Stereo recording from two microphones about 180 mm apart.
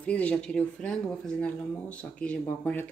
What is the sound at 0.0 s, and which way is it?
Speech, 5° left (ahead or behind).